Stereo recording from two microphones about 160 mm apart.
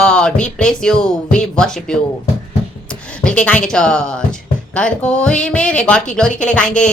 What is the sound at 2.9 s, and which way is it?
Speech, 5° left (ahead or behind).